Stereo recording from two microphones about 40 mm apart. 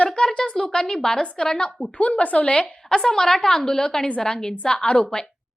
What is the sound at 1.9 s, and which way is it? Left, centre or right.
Speech, left.